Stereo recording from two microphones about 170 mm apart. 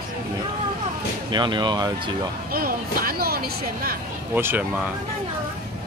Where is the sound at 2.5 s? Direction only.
60° right (ahead or behind).